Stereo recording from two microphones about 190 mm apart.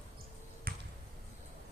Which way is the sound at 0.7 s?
50° right (ahead or behind).